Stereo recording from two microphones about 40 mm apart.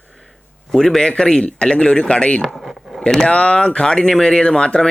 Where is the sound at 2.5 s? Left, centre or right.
Centre.